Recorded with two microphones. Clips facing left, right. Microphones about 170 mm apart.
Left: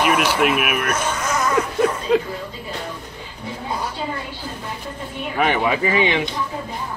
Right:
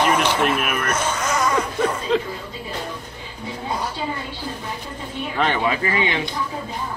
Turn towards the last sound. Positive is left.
turn(degrees=15)  # may be behind; listen again after turning